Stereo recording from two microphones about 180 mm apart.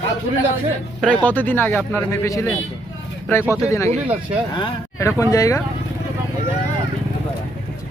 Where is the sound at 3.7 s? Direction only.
15° left (ahead or behind).